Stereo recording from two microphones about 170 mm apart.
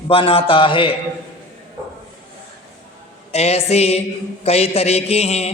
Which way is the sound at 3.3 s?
40° left (ahead or behind).